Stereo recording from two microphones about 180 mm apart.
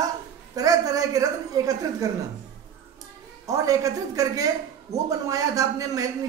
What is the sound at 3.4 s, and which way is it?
Speech, 20° right (ahead or behind).